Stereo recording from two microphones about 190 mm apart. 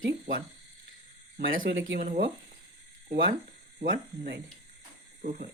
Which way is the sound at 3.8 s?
45° right (ahead or behind).